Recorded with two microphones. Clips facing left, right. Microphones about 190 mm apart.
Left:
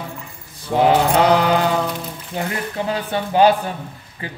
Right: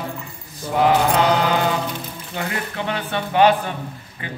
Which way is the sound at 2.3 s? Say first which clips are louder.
Left 2 dB; 35° left (ahead or behind).